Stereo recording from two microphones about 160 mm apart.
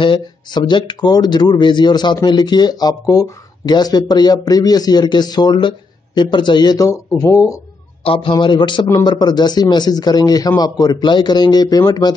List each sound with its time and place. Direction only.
0.0 s speech: 30° left (ahead or behind)
8.0 s speech: 35° left (ahead or behind)